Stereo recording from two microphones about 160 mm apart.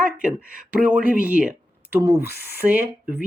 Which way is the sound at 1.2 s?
10° right (ahead or behind).